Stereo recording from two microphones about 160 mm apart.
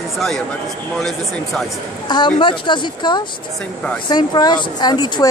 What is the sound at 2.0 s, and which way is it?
Speech, 30° left (ahead or behind).